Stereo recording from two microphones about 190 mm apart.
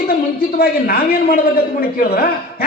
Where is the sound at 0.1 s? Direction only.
50° left (ahead or behind).